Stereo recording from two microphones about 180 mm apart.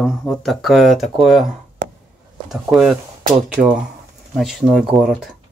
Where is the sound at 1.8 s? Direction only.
65° right (ahead or behind).